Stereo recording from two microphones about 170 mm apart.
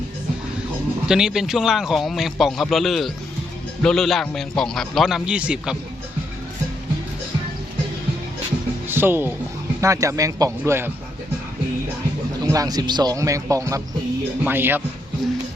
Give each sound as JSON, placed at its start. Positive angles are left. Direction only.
{"t": 1.0, "sound": "a man's voice", "side_deg": -5}
{"t": 8.9, "sound": "speech", "side_deg": -10}
{"t": 12.5, "sound": "speech", "side_deg": -20}